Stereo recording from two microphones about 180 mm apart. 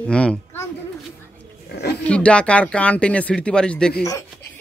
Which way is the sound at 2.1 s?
5° left (ahead or behind).